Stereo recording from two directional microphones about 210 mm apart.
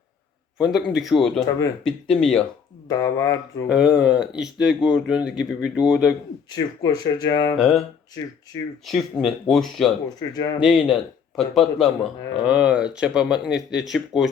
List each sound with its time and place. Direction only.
0.6 s speech: centre (ahead or behind)
2.9 s speech: 15° left (ahead or behind)
3.7 s speech: 5° right (ahead or behind)
6.5 s speech: 20° left (ahead or behind)
8.9 s speech: centre (ahead or behind)
10.2 s speech: 20° left (ahead or behind)
10.6 s speech: centre (ahead or behind)